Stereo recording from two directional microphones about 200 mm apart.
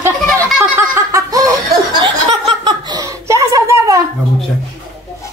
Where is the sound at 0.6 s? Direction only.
15° right (ahead or behind).